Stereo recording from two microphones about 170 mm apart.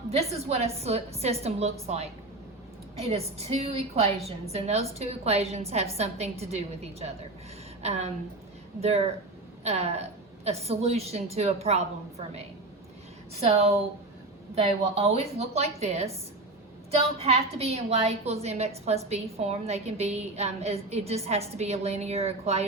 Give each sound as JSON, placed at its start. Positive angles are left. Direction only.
{"t": 0.1, "sound": "a woman's voice", "side_deg": -35}